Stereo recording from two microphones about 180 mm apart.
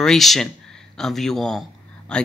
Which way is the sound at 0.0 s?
Centre (ahead or behind).